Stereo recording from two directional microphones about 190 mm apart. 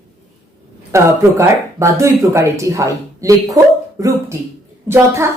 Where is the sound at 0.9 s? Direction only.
15° right (ahead or behind).